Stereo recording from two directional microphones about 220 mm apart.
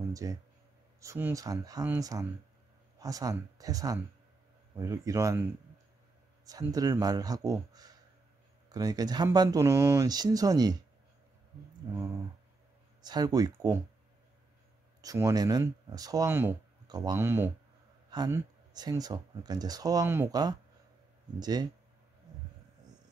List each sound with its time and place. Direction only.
0.1 s speech: 15° right (ahead or behind)
13.0 s speech: 20° right (ahead or behind)
15.0 s speech: 15° right (ahead or behind)